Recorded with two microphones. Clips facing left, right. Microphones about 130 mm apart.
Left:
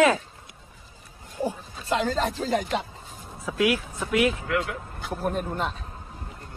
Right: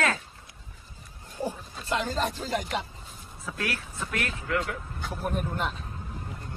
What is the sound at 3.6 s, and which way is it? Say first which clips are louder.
Speech: left 10 dB; 10° left (ahead or behind).